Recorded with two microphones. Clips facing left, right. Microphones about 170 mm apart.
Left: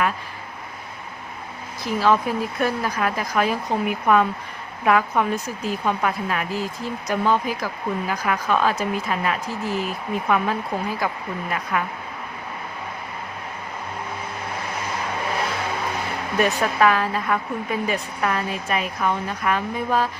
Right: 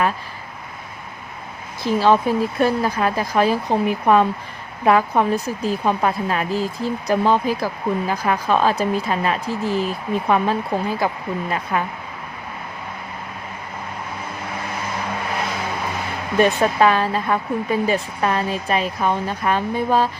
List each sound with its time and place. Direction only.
1.8 s a woman's voice: 30° right (ahead or behind)
16.4 s a woman's voice: 30° right (ahead or behind)